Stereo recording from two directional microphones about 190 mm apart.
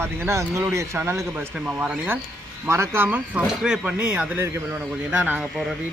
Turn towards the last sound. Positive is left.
turn(degrees=-10)  # may be behind; listen again after turning